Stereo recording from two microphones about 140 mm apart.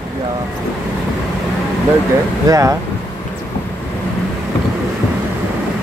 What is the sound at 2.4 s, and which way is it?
Speech, 25° right (ahead or behind).